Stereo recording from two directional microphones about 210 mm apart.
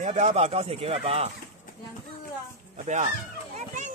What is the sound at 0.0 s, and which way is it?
Speech, 35° right (ahead or behind).